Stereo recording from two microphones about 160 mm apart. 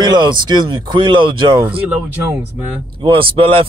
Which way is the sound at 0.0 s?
25° right (ahead or behind).